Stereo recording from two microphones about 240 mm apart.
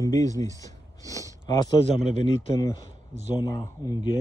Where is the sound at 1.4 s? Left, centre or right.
Centre.